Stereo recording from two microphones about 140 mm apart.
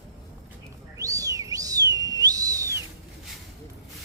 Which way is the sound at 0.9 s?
25° right (ahead or behind).